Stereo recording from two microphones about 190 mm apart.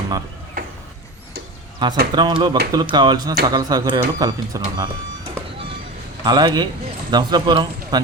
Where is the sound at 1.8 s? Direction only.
25° right (ahead or behind).